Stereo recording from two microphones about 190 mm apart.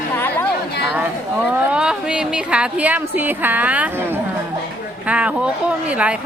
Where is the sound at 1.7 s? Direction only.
5° right (ahead or behind).